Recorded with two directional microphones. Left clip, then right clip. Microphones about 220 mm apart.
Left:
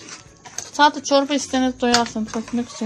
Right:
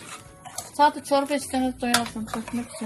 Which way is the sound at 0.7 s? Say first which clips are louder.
Left 4 dB; 35° left (ahead or behind).